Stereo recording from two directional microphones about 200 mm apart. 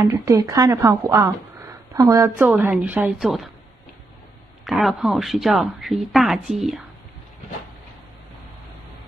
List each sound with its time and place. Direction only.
0.0 s speech: 15° right (ahead or behind); by 3.4 s centre (ahead or behind)
4.6 s a woman's voice: centre (ahead or behind)